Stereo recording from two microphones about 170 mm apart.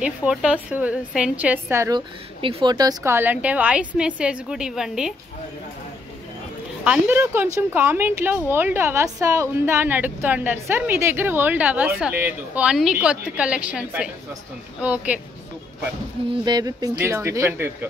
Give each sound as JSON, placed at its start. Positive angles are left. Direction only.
{"t": 0.0, "sound": "a woman's voice", "side_deg": -5}
{"t": 6.8, "sound": "a woman's voice", "side_deg": -10}
{"t": 16.4, "sound": "a woman's voice", "side_deg": -25}